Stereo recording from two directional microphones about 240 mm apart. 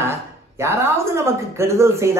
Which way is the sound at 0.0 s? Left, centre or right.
Centre.